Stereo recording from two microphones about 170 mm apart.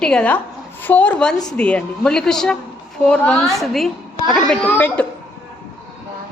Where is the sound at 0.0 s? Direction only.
5° left (ahead or behind).